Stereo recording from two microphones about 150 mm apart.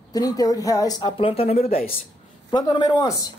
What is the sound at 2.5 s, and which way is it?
Speech, 30° left (ahead or behind).